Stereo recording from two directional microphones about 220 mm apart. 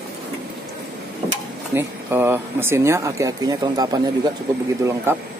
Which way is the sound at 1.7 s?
10° right (ahead or behind).